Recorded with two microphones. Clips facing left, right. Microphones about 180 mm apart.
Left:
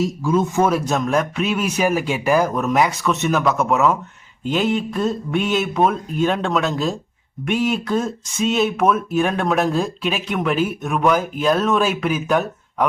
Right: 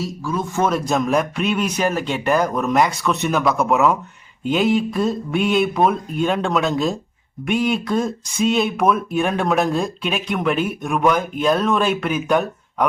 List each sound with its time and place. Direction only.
0.0 s speech: 20° left (ahead or behind)
0.6 s speech: 5° left (ahead or behind)